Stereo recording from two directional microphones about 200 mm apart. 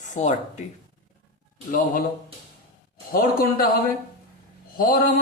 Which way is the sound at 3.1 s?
45° left (ahead or behind).